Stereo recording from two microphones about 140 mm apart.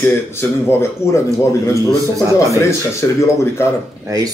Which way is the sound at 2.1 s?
25° right (ahead or behind).